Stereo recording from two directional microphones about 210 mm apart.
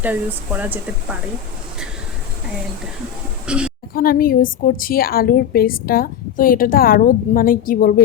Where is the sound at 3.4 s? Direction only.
5° right (ahead or behind).